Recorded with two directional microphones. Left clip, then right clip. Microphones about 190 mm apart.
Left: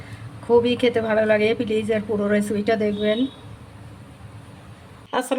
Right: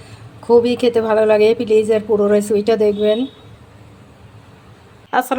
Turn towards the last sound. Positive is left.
turn(degrees=-20)  # may be behind; listen again after turning